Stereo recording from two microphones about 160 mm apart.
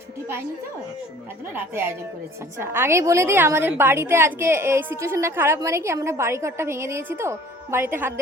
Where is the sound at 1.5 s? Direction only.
15° right (ahead or behind).